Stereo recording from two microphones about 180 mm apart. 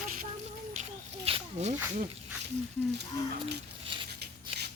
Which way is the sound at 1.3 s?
35° right (ahead or behind).